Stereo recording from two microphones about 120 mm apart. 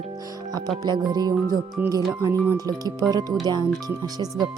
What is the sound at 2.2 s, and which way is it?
Speech, 25° right (ahead or behind).